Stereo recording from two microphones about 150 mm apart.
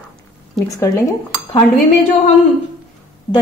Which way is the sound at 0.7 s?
20° left (ahead or behind).